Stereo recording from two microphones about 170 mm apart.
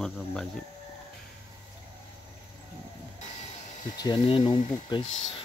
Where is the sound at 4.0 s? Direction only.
25° left (ahead or behind).